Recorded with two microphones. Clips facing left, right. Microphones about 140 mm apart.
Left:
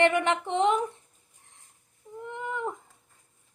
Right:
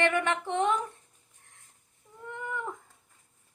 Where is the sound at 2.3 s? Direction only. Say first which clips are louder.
Left 3 dB; 20° left (ahead or behind).